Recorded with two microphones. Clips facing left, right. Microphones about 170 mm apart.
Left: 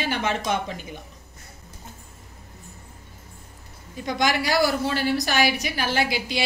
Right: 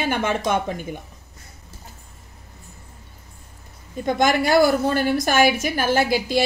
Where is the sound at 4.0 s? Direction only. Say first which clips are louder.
Right 5 dB; 50° right (ahead or behind).